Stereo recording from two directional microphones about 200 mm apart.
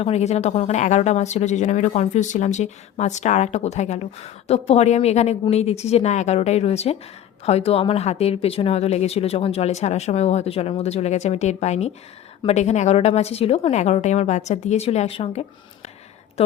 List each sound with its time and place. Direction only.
0.0 s speech: 35° left (ahead or behind)